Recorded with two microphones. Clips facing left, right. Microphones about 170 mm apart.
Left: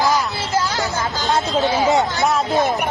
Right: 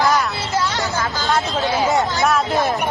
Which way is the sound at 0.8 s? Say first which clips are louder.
Even; 20° left (ahead or behind).